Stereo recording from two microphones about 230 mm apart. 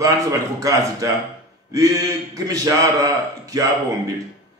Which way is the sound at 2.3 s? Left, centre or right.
Centre.